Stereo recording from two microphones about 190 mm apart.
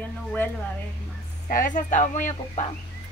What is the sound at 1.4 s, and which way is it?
Speech, 45° left (ahead or behind).